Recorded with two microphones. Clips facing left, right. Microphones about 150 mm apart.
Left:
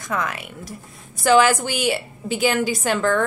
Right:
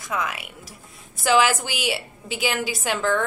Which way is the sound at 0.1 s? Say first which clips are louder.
Left 2 dB; 5° right (ahead or behind).